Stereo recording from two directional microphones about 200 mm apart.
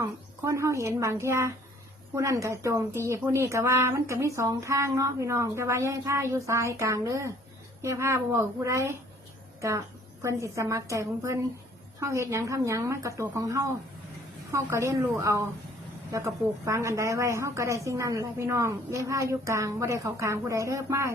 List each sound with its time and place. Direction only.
0.0 s a woman's voice: 15° right (ahead or behind)